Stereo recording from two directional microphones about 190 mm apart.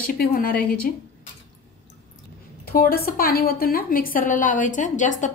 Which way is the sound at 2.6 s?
50° left (ahead or behind).